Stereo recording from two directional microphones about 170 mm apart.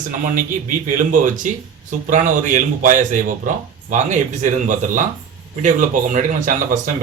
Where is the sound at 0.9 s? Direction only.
50° right (ahead or behind).